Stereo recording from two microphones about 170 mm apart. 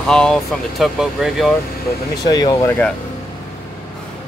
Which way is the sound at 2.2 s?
25° left (ahead or behind).